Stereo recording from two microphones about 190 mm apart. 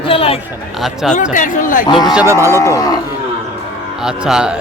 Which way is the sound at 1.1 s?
40° left (ahead or behind).